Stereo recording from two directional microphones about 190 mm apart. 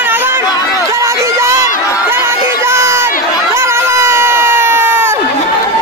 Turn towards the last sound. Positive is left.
turn(degrees=-10)  # may be behind; listen again after turning